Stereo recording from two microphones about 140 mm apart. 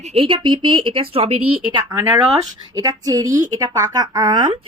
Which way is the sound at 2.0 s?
25° right (ahead or behind).